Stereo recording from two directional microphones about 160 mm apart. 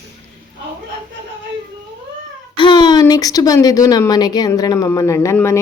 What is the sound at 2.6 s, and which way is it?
Speech, 30° left (ahead or behind).